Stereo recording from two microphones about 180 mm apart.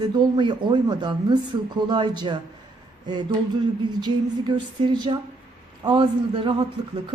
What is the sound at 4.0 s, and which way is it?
Speech, 25° right (ahead or behind).